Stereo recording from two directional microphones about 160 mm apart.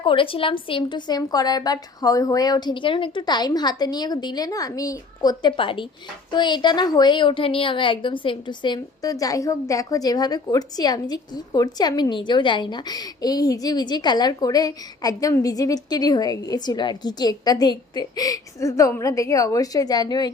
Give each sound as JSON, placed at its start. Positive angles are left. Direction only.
{"t": 0.0, "sound": "a woman's voice", "side_deg": 35}